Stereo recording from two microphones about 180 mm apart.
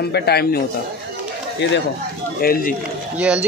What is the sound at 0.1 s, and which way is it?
Speech, 65° left (ahead or behind).